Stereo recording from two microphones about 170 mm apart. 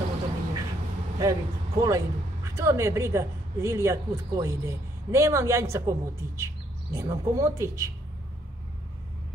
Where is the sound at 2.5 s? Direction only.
15° right (ahead or behind).